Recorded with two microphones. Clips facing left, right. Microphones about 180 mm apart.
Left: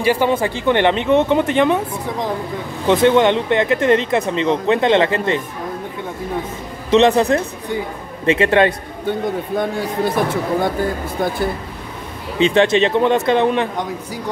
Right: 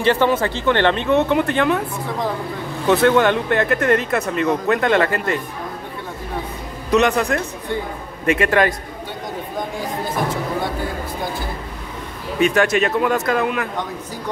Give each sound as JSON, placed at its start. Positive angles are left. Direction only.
{"t": 0.0, "sound": "speech", "side_deg": 10}
{"t": 2.9, "sound": "speech", "side_deg": 20}
{"t": 6.9, "sound": "speech", "side_deg": 30}
{"t": 9.6, "sound": "speech", "side_deg": 70}
{"t": 12.4, "sound": "speech", "side_deg": 25}